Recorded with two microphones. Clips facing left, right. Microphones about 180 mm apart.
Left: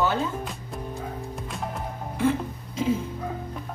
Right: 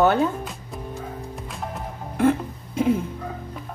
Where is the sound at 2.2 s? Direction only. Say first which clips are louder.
Right 4 dB; 55° right (ahead or behind).